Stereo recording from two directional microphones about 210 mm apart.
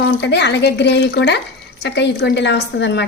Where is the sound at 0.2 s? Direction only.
55° left (ahead or behind).